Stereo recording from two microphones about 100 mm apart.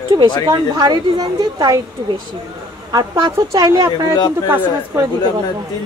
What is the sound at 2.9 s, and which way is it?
Speech, 40° right (ahead or behind).